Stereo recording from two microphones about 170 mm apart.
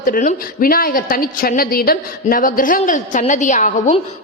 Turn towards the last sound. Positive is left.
turn(degrees=45)  # may be behind; listen again after turning